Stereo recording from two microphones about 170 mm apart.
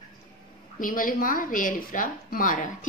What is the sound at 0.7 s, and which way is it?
A woman's voice, 55° left (ahead or behind).